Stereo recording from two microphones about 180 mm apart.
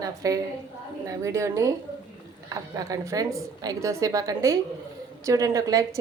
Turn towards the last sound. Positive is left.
turn(degrees=-20)  # may be behind; listen again after turning